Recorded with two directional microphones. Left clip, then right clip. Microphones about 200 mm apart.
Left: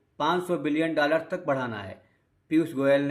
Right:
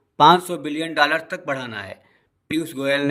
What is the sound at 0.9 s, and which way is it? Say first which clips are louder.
A man's voice: right 8 dB; 55° right (ahead or behind).